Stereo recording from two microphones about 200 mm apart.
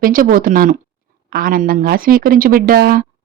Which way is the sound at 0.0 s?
45° right (ahead or behind).